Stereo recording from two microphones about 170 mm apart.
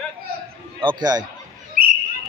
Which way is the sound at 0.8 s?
25° right (ahead or behind).